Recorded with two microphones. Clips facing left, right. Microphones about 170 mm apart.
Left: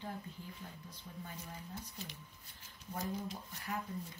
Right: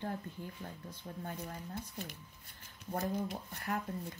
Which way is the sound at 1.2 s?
55° right (ahead or behind).